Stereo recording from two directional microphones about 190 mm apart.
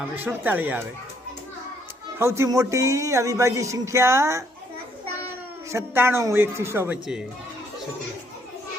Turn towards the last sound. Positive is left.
turn(degrees=-5)  # may be behind; listen again after turning